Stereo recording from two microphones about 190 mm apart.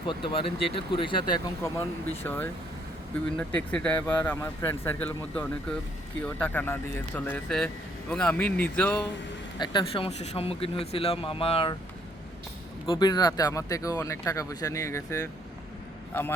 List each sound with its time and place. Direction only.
0.1 s speech: 25° left (ahead or behind)
2.2 s speech: 10° left (ahead or behind)
9.6 s speech: 25° left (ahead or behind)
12.8 s speech: 25° left (ahead or behind)